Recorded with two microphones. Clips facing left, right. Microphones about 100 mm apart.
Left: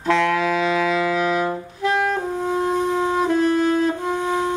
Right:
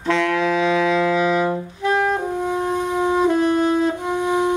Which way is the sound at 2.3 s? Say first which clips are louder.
Left 1 dB; 15° right (ahead or behind).